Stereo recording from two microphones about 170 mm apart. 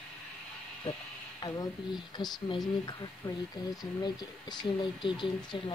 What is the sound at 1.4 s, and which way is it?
Speech, 25° left (ahead or behind).